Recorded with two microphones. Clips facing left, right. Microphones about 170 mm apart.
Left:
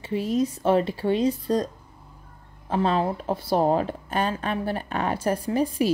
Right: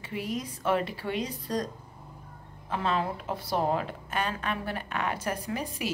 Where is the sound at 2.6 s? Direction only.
30° left (ahead or behind).